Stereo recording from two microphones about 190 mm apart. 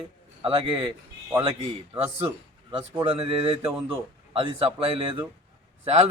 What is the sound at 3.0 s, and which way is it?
A man's voice, 30° right (ahead or behind).